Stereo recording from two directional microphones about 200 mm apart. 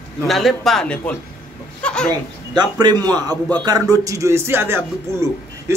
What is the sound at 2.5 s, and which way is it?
A man's voice, 20° right (ahead or behind).